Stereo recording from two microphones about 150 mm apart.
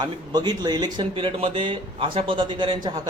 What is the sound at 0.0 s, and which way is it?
Speech, 25° right (ahead or behind).